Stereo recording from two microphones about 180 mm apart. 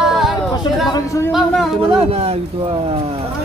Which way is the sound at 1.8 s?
35° right (ahead or behind).